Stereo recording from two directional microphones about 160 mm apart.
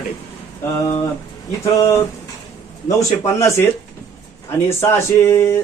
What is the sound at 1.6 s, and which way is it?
Speech, 20° left (ahead or behind).